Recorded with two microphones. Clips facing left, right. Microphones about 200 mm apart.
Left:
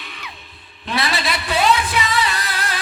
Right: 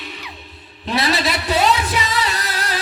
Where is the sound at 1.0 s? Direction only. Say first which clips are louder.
Right 4 dB; 40° right (ahead or behind).